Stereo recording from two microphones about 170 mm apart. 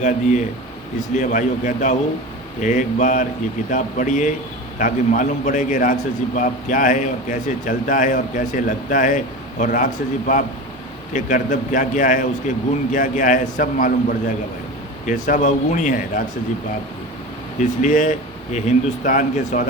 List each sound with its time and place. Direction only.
0.0 s a man's voice: 45° left (ahead or behind)
17.6 s a man's voice: 45° left (ahead or behind)